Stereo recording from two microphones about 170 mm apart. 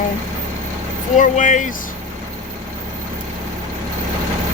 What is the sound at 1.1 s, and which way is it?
Speech, 50° left (ahead or behind).